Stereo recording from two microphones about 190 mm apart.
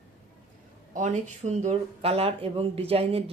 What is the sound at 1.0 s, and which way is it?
A woman's voice, 40° right (ahead or behind).